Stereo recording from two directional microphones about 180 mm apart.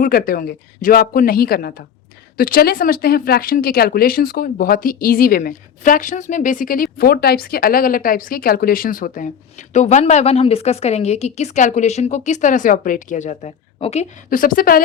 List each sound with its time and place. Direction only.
0.0 s a woman's voice: 55° left (ahead or behind)